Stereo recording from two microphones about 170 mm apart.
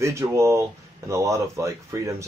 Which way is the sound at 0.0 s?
15° right (ahead or behind).